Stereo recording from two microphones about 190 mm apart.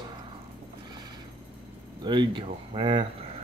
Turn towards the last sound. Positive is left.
turn(degrees=-25)  # may be behind; listen again after turning